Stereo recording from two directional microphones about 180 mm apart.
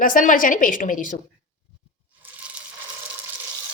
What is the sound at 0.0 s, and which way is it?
Speech, 50° left (ahead or behind).